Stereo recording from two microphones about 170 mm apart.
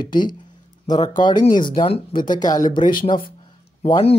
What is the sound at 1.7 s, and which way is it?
Speech, 50° left (ahead or behind).